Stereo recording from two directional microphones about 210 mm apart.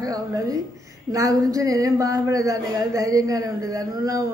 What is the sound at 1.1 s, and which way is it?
Speech, 15° right (ahead or behind).